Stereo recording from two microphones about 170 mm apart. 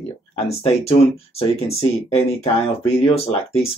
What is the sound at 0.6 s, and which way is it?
Speech, 35° left (ahead or behind).